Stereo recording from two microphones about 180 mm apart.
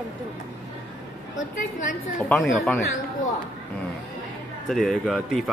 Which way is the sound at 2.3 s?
5° left (ahead or behind).